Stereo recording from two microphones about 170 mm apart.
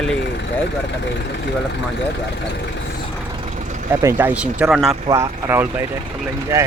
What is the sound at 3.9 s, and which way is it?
Speech, 15° right (ahead or behind).